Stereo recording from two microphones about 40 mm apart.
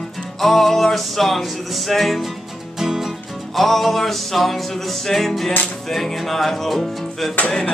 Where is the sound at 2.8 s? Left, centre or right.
Centre.